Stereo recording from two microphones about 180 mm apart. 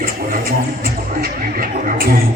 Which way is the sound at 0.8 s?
55° right (ahead or behind).